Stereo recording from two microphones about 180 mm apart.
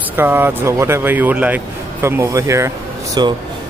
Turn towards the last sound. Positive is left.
turn(degrees=-25)  # may be behind; listen again after turning